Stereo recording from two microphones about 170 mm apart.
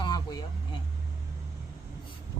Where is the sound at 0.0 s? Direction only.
25° left (ahead or behind).